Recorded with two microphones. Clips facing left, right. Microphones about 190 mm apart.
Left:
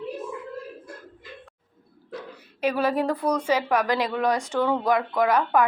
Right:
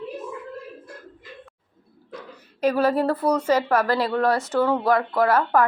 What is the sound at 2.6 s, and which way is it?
Speech, 10° left (ahead or behind).